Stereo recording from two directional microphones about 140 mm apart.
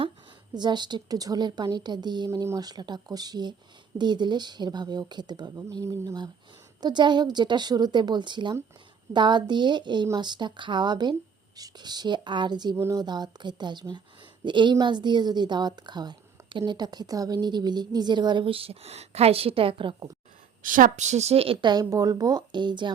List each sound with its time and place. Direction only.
0.5 s a woman's voice: 30° right (ahead or behind)
12.7 s a woman's voice: 20° right (ahead or behind); by 20.1 s 35° right (ahead or behind)
20.6 s a woman's voice: 75° right (ahead or behind); by 22.9 s 35° right (ahead or behind)